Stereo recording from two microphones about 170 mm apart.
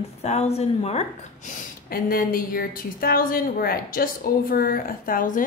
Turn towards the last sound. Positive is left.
turn(degrees=55)  # may be behind; listen again after turning